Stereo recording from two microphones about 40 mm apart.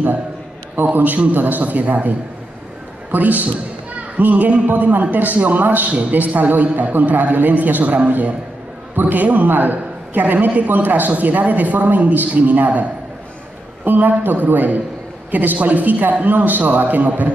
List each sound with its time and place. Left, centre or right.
0.9 s a woman's voice: right